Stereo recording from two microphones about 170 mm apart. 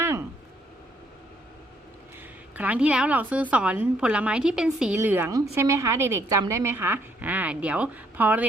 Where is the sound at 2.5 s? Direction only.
10° right (ahead or behind).